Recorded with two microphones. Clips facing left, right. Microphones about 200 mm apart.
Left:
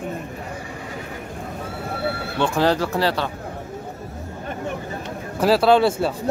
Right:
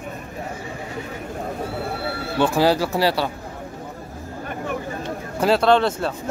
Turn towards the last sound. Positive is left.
turn(degrees=5)  # may be behind; listen again after turning